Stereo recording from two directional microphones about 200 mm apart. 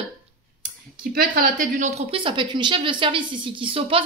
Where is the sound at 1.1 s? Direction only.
45° right (ahead or behind); by 4.0 s 25° right (ahead or behind).